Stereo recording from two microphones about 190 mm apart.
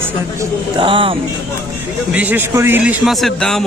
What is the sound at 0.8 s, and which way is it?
Speech, 25° right (ahead or behind).